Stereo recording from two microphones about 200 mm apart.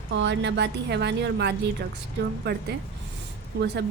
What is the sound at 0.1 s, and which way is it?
A woman's voice, 60° right (ahead or behind).